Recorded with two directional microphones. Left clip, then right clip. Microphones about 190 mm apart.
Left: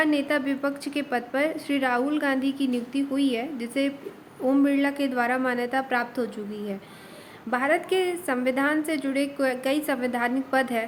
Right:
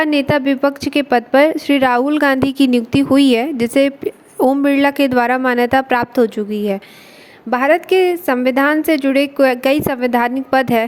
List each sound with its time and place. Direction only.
0.0 s a woman's voice: 45° right (ahead or behind)